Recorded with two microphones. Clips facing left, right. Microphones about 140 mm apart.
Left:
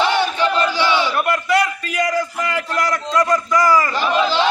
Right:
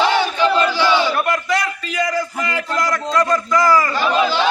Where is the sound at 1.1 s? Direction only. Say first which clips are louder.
Left 2 dB; 5° left (ahead or behind).